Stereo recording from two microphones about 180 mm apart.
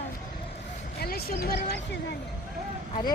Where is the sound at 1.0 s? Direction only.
55° left (ahead or behind).